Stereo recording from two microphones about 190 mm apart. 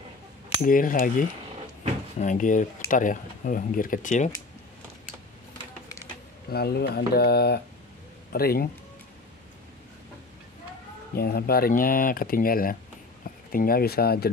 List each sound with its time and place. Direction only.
0.6 s speech: 45° left (ahead or behind)
6.5 s speech: 60° left (ahead or behind)
11.1 s speech: 55° left (ahead or behind)